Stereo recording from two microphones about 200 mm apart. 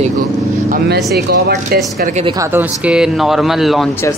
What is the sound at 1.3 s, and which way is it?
Speech, 55° right (ahead or behind).